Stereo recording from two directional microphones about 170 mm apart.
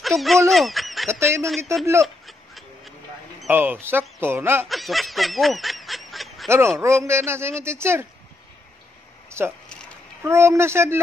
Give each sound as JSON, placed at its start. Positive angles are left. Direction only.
{"t": 0.0, "sound": "speech", "side_deg": 0}
{"t": 1.2, "sound": "speech", "side_deg": -15}
{"t": 2.2, "sound": "a sound", "side_deg": 0}
{"t": 3.4, "sound": "speech", "side_deg": -10}
{"t": 4.6, "sound": "honk", "side_deg": 0}
{"t": 6.8, "sound": "speech", "side_deg": -15}
{"t": 9.3, "sound": "speech", "side_deg": -15}